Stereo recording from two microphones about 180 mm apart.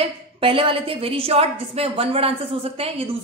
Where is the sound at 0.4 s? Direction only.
30° right (ahead or behind).